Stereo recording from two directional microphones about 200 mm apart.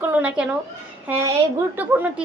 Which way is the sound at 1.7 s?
10° right (ahead or behind).